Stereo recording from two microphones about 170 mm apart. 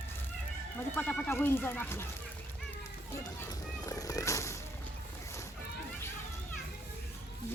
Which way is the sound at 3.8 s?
20° left (ahead or behind).